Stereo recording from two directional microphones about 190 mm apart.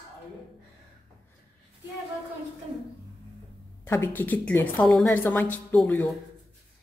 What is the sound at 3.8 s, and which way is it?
A woman's voice, 10° left (ahead or behind).